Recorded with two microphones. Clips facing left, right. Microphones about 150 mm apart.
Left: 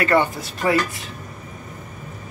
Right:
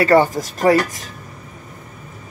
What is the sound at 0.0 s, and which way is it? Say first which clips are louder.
Speech: right 5 dB; 40° right (ahead or behind).